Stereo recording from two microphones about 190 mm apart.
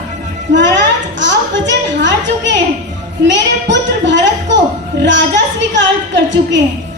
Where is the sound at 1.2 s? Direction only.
70° right (ahead or behind).